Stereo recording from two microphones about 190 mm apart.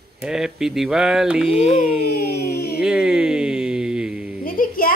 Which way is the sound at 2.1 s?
55° left (ahead or behind).